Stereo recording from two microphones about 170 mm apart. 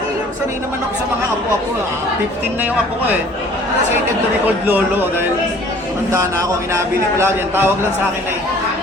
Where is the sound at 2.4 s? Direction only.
10° right (ahead or behind).